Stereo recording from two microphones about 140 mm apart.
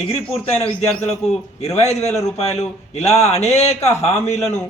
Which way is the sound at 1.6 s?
50° left (ahead or behind).